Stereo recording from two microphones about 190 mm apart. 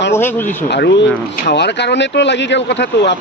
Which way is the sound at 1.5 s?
65° left (ahead or behind).